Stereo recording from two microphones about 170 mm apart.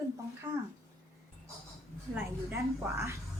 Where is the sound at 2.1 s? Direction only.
15° right (ahead or behind).